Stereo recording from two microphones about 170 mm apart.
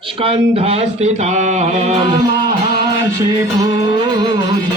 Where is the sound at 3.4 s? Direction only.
25° right (ahead or behind).